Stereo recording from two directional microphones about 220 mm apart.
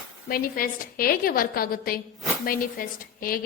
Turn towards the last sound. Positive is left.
turn(degrees=40)  # may be behind; listen again after turning